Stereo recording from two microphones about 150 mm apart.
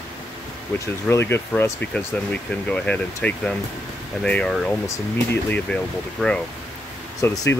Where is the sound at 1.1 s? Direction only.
15° left (ahead or behind).